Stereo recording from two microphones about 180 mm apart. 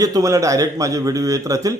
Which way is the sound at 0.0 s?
20° right (ahead or behind).